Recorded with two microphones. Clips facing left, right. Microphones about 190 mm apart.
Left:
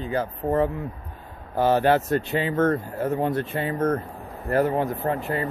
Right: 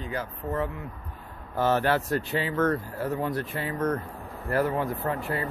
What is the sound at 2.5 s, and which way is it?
Speech, 50° left (ahead or behind).